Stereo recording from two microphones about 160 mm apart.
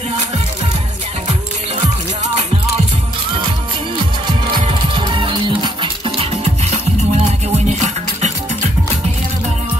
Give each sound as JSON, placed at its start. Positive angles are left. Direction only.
{"t": 4.6, "sound": "music", "side_deg": -30}